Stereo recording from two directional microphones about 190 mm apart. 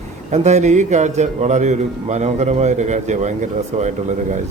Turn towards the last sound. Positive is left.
turn(degrees=-40)  # may be behind; listen again after turning